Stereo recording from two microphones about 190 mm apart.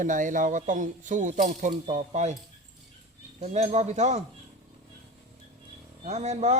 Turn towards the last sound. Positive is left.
turn(degrees=-35)  # may be behind; listen again after turning